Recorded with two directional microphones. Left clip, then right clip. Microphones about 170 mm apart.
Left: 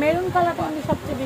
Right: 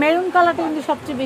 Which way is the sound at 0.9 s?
65° right (ahead or behind).